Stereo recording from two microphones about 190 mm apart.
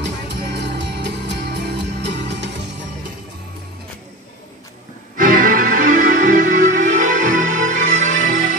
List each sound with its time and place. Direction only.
0.0 s music: 65° right (ahead or behind)
5.1 s music: 45° right (ahead or behind)